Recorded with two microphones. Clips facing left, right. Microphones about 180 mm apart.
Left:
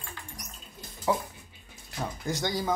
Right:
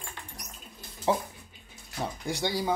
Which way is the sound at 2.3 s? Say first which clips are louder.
Even; 15° right (ahead or behind).